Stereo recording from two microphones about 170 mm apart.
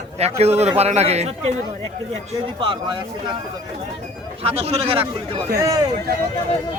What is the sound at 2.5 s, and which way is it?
Speech, 30° right (ahead or behind).